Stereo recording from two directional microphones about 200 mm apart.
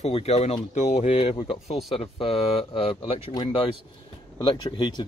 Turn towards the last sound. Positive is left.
turn(degrees=25)  # may be behind; listen again after turning